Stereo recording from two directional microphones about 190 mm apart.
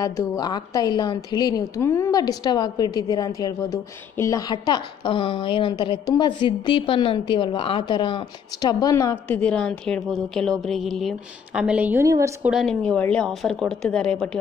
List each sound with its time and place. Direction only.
0.0 s a woman's voice: 20° left (ahead or behind); by 12.3 s 15° right (ahead or behind)
12.4 s a woman's voice: centre (ahead or behind)